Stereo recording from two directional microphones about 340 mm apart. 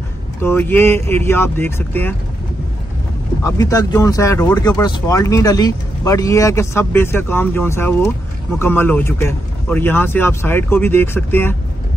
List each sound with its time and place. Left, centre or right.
0.4 s speech: centre
3.4 s speech: centre